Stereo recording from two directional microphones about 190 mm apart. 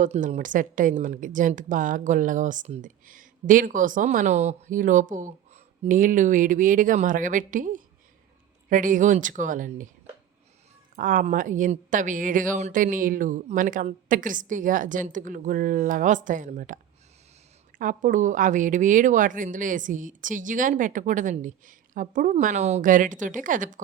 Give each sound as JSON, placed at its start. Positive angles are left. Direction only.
{"t": 0.0, "sound": "a woman's voice", "side_deg": -40}
{"t": 10.9, "sound": "a woman's voice", "side_deg": -45}